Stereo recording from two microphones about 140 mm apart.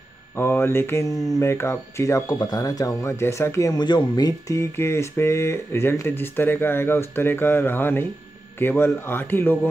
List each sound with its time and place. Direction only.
0.4 s a man's voice: 15° left (ahead or behind)